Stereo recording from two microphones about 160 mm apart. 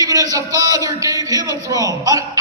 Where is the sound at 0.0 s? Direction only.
20° right (ahead or behind).